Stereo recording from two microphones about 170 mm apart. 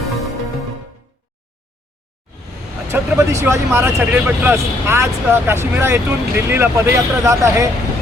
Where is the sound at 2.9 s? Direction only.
15° right (ahead or behind).